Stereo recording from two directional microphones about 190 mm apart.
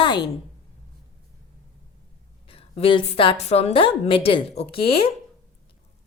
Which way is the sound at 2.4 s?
30° left (ahead or behind).